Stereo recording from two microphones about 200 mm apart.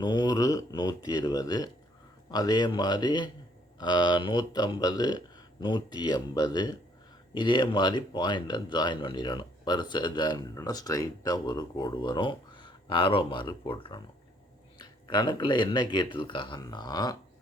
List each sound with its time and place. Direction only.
0.0 s speech: 20° left (ahead or behind)